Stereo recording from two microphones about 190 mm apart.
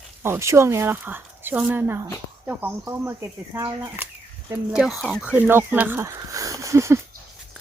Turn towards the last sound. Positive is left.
turn(degrees=-15)  # may be behind; listen again after turning